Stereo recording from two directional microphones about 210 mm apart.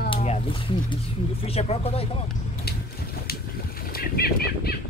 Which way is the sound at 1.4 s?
30° left (ahead or behind).